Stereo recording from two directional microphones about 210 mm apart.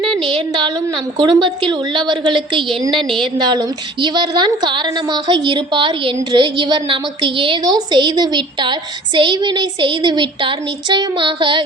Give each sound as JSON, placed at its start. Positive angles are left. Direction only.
{"t": 0.0, "sound": "a woman's voice", "side_deg": -25}